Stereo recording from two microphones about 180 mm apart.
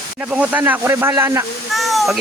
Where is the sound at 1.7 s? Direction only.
Centre (ahead or behind).